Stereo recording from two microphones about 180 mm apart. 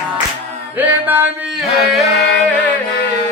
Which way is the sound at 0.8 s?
10° right (ahead or behind).